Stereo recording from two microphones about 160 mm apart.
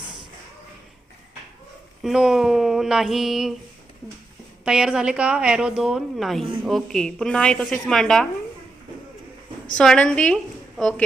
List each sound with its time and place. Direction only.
2.0 s a woman's voice: 5° right (ahead or behind)
4.6 s a woman's voice: 5° right (ahead or behind)
9.7 s a woman's voice: 5° left (ahead or behind)